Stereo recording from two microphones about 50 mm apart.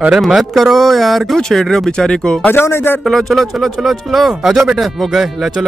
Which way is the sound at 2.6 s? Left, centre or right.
Left.